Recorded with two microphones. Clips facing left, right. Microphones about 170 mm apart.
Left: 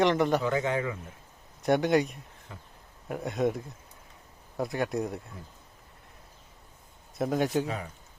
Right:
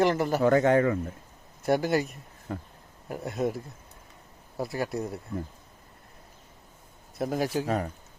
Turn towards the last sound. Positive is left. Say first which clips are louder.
# right 6 dB
turn(degrees=-45)  # may be behind; listen again after turning